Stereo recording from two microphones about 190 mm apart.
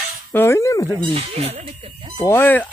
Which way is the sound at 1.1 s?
30° right (ahead or behind).